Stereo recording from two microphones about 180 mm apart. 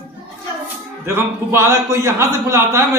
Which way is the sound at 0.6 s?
15° right (ahead or behind).